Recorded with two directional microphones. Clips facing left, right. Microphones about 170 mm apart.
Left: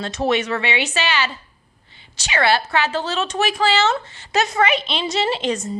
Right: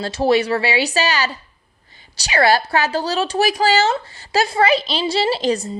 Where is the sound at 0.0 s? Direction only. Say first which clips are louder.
Right 4 dB; 30° right (ahead or behind).